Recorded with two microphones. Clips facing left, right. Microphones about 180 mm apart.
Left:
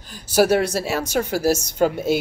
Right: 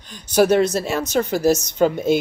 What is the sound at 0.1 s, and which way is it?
Speech, 10° left (ahead or behind).